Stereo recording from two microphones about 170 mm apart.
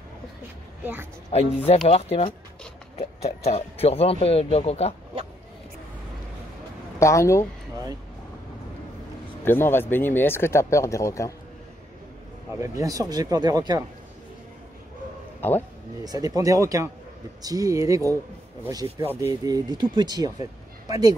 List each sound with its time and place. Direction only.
1.3 s a man's voice: 35° left (ahead or behind)
7.0 s speech: 15° left (ahead or behind)
9.4 s speech: 15° left (ahead or behind)
12.5 s speech: 15° right (ahead or behind)
16.0 s speech: 20° right (ahead or behind)